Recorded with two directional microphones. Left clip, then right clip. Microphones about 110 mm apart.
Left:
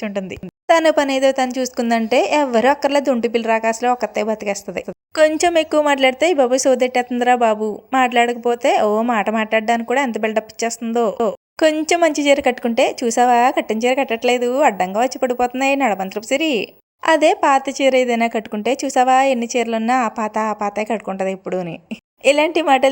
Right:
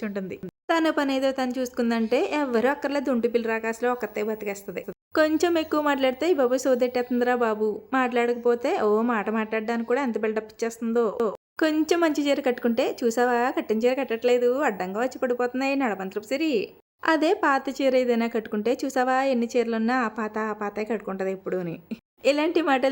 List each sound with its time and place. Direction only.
0.0 s a woman's voice: 25° left (ahead or behind); by 4.8 s 40° left (ahead or behind)
5.4 s a woman's voice: 20° left (ahead or behind)
17.1 s a woman's voice: 15° left (ahead or behind)